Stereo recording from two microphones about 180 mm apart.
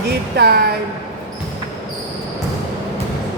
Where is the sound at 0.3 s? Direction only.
65° right (ahead or behind).